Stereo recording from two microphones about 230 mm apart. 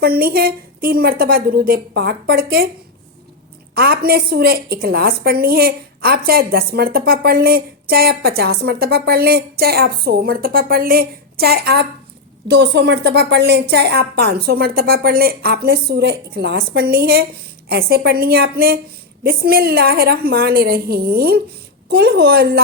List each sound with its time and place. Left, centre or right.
0.0 s a woman's voice: right
3.8 s a woman's voice: right